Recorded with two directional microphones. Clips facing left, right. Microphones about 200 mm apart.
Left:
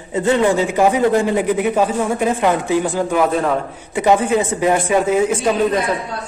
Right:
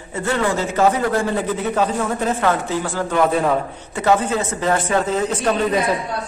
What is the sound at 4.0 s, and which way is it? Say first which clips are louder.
A man's voice: left 3 dB; 15° left (ahead or behind).